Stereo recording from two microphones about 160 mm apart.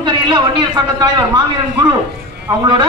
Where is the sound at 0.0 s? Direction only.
25° right (ahead or behind).